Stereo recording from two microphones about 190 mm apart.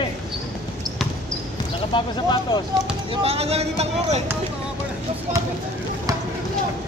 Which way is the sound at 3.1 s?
30° right (ahead or behind).